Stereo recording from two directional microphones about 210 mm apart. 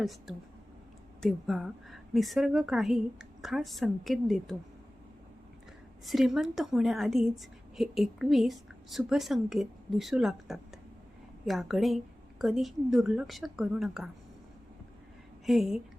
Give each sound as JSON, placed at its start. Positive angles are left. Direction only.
{"t": 0.0, "sound": "a woman's voice", "side_deg": 0}
{"t": 6.1, "sound": "a woman's voice", "side_deg": 0}
{"t": 15.4, "sound": "a woman's voice", "side_deg": 0}